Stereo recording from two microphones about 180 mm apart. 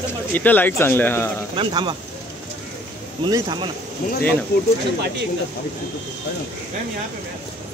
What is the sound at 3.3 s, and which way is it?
Speech, 25° right (ahead or behind).